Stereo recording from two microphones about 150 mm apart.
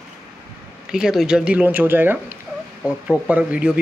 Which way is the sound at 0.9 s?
5° right (ahead or behind).